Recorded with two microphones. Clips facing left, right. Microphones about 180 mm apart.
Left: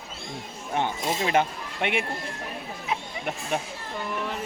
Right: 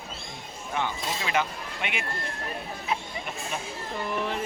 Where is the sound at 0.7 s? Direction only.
50° left (ahead or behind).